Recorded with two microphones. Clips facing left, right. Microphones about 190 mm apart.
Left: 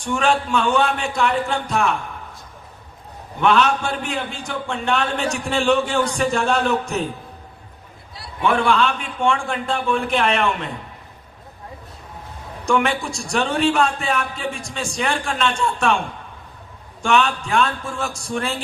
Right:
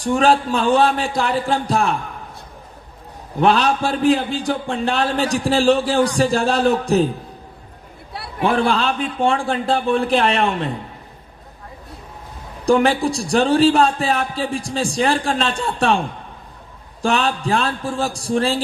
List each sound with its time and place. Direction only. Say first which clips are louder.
0.0 s a man's voice: right 4 dB; 35° right (ahead or behind)
3.3 s a man's voice: right 1 dB; 35° right (ahead or behind)
8.4 s a man's voice: even; 35° right (ahead or behind)
12.6 s a man's voice: right 5 dB; 35° right (ahead or behind)
17.0 s a man's voice: even; 35° right (ahead or behind)